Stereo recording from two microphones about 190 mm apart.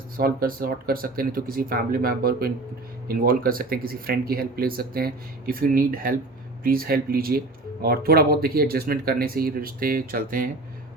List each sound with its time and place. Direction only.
0.2 s speech: 50° right (ahead or behind)